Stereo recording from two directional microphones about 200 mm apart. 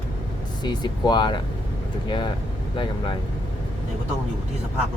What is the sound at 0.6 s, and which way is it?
Speech, 20° left (ahead or behind).